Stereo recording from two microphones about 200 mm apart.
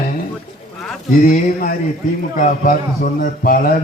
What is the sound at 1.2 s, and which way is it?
A man's voice, 45° left (ahead or behind).